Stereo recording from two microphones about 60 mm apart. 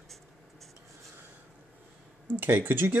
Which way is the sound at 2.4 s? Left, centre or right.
Right.